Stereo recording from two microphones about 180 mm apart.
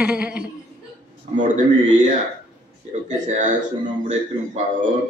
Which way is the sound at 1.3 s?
45° right (ahead or behind).